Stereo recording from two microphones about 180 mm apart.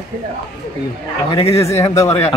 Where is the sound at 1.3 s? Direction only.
35° left (ahead or behind).